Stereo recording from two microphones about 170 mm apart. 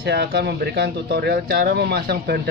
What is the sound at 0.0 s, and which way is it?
Speech, 70° right (ahead or behind).